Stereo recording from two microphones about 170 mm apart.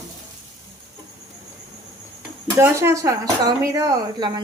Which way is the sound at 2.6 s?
15° right (ahead or behind).